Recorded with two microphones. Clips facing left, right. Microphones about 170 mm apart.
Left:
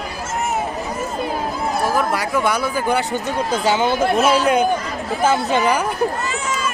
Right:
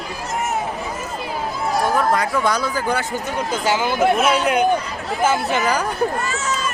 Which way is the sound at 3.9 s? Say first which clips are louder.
Even; 35° left (ahead or behind).